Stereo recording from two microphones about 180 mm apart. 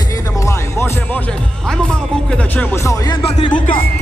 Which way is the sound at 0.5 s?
10° left (ahead or behind).